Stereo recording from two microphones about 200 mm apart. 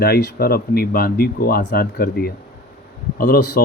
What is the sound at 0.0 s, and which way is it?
Speech, 50° left (ahead or behind).